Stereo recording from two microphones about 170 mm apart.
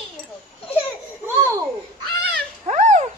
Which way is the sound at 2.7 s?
45° right (ahead or behind).